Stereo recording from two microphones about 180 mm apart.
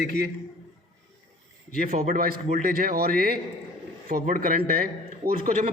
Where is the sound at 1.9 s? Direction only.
40° right (ahead or behind).